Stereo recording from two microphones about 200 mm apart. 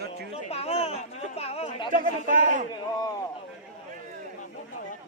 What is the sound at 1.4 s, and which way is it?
Chatter, 30° left (ahead or behind).